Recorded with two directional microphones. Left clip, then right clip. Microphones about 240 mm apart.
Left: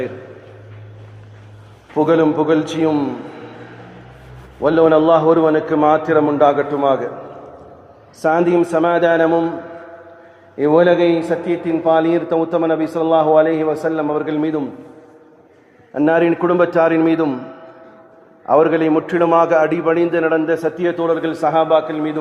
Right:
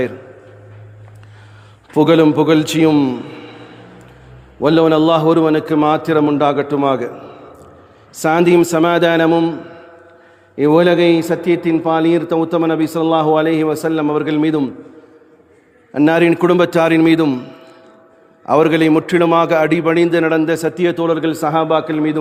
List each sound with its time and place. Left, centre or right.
2.0 s a man's voice: right
4.6 s a man's voice: right
8.2 s a man's voice: right
10.6 s a man's voice: right
15.9 s a man's voice: right